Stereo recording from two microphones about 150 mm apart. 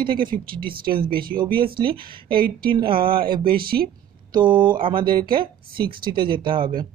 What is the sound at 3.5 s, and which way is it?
Speech, 85° right.